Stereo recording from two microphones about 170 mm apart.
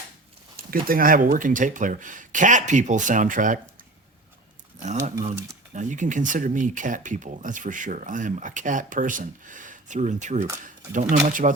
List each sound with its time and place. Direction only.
0.5 s speech: 60° right (ahead or behind)
5.7 s speech: 45° right (ahead or behind)